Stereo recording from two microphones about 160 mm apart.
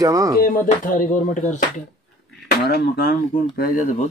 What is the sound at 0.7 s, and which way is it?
Speech, 55° left (ahead or behind).